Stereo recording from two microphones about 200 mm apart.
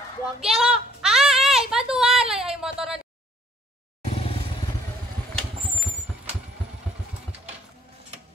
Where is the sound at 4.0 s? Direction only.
30° left (ahead or behind).